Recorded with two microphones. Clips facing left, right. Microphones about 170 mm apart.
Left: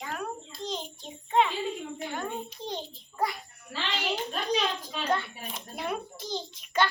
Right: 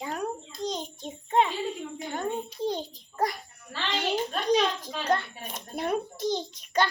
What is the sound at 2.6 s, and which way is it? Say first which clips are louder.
Speech: right 9 dB; 10° right (ahead or behind).